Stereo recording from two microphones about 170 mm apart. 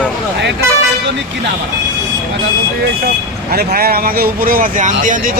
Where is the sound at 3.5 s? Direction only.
60° right (ahead or behind).